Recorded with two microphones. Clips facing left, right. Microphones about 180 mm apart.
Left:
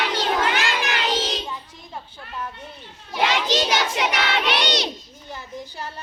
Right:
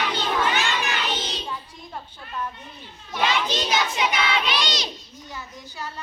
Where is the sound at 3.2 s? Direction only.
85° left; by 4.9 s 65° left (ahead or behind).